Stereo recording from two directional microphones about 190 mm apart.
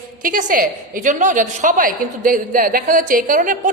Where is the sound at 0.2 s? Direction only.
45° right (ahead or behind).